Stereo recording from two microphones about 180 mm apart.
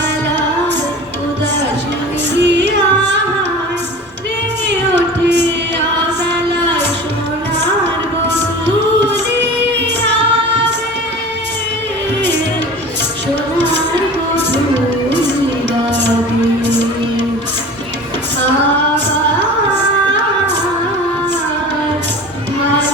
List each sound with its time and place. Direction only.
2.4 s music: 75° right (ahead or behind)